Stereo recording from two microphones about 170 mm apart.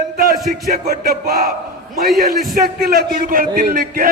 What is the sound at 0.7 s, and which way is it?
Speech, 60° right (ahead or behind).